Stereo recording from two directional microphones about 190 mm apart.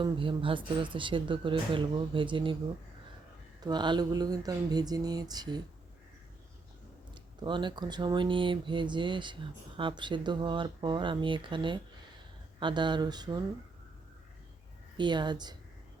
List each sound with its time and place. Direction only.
0.0 s speech: 25° right (ahead or behind)
3.6 s speech: 25° right (ahead or behind)
7.1 s speech: 25° right (ahead or behind)
14.9 s speech: 25° right (ahead or behind)